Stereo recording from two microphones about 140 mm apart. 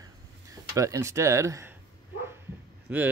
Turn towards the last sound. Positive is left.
turn(degrees=-10)  # may be behind; listen again after turning